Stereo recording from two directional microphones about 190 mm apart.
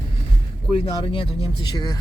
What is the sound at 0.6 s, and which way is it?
Speech, 30° left (ahead or behind).